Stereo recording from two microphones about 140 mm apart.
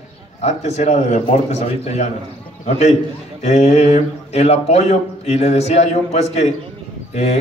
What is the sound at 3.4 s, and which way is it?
A man's voice, 50° left (ahead or behind).